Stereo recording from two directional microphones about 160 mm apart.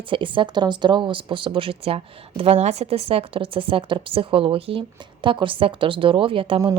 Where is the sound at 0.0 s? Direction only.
30° right (ahead or behind).